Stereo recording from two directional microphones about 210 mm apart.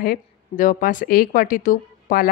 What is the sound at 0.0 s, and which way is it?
Speech, 40° left (ahead or behind).